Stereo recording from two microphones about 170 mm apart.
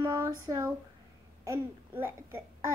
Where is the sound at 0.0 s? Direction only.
20° right (ahead or behind).